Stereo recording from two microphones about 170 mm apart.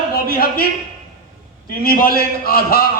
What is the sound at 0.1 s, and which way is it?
Speech, 60° left (ahead or behind).